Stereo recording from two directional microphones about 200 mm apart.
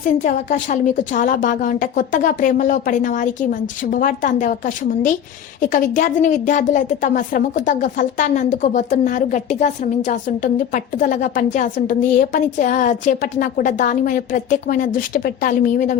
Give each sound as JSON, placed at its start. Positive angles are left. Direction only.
{"t": 0.0, "sound": "speech", "side_deg": 40}